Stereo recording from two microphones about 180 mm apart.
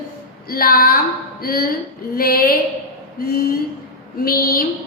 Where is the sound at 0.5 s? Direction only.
55° left (ahead or behind).